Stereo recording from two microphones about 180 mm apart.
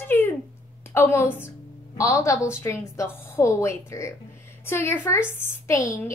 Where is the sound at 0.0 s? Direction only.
10° left (ahead or behind).